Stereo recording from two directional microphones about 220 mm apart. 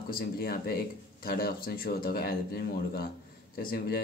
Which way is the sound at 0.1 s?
40° left (ahead or behind).